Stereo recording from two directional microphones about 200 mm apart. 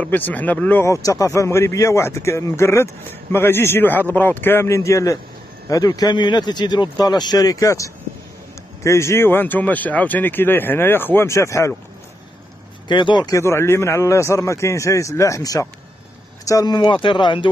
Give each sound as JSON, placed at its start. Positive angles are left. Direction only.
{"t": 0.0, "sound": "speech", "side_deg": 10}
{"t": 12.8, "sound": "speech", "side_deg": 20}